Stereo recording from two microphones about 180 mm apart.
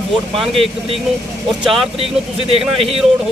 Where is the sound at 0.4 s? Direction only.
Centre (ahead or behind).